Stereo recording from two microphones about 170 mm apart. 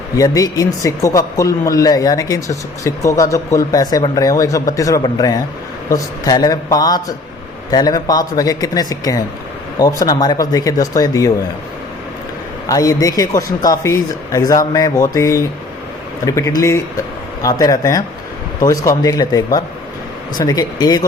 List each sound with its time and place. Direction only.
0.2 s speech: 20° left (ahead or behind)
12.6 s speech: 20° left (ahead or behind)